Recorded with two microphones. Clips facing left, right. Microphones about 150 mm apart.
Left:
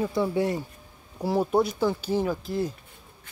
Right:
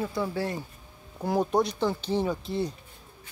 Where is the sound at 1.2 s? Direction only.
5° left (ahead or behind).